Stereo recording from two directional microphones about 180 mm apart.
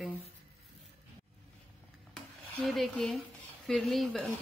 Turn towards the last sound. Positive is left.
turn(degrees=5)  # may be behind; listen again after turning